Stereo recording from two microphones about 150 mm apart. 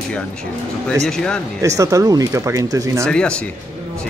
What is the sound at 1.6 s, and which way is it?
Speech, 20° right (ahead or behind).